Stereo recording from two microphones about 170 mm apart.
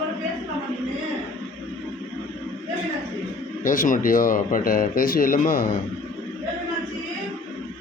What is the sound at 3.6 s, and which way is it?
Speech, 50° left (ahead or behind).